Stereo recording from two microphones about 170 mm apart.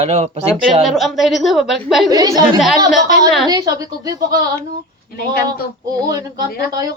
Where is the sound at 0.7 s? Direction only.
Centre (ahead or behind).